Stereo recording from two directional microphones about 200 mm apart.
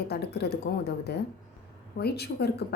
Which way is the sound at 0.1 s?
55° left (ahead or behind).